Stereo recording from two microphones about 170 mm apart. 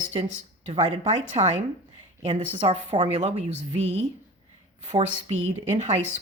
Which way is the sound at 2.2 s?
30° right (ahead or behind).